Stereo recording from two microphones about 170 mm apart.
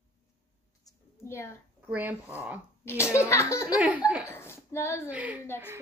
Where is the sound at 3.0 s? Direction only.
15° left (ahead or behind).